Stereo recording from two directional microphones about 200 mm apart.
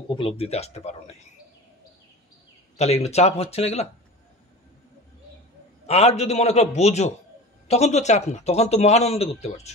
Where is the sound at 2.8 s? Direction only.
30° left (ahead or behind).